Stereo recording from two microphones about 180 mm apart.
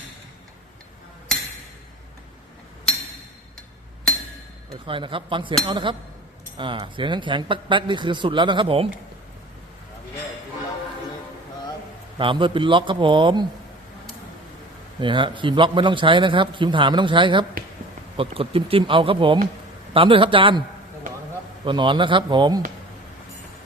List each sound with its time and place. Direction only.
4.9 s a man's voice: 30° right (ahead or behind)
12.1 s a man's voice: 25° right (ahead or behind)
15.0 s a man's voice: 25° right (ahead or behind)